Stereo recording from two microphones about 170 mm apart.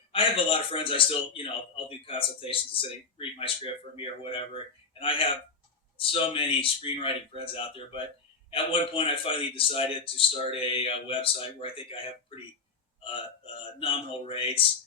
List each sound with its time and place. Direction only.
0.1 s a man's voice: 30° left (ahead or behind)